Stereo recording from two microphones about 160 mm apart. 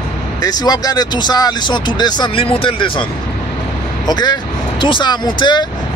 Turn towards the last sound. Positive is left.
turn(degrees=30)  # may be behind; listen again after turning